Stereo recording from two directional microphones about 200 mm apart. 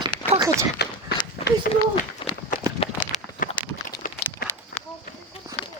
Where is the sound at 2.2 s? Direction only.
25° left (ahead or behind).